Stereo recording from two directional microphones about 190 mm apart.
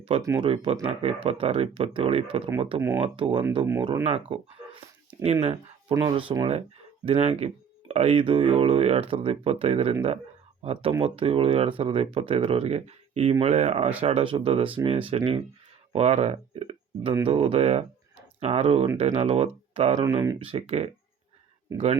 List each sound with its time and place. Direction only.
0.2 s speech: 15° right (ahead or behind)
0.4 s speech: 30° right (ahead or behind)
20.0 s speech: 15° right (ahead or behind)
20.4 s speech: 30° right (ahead or behind)